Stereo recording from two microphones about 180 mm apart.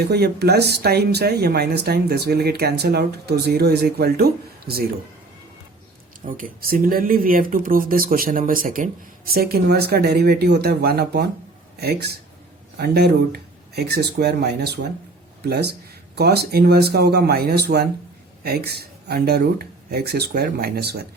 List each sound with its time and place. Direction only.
0.0 s speech: 60° right (ahead or behind)
6.2 s speech: 50° right (ahead or behind)